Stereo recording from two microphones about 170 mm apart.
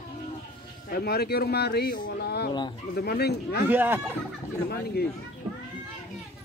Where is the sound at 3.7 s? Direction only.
10° right (ahead or behind).